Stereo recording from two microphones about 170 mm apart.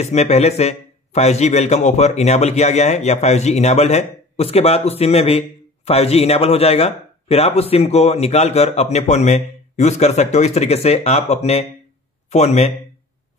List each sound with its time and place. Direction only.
0.0 s a man's voice: 40° left (ahead or behind)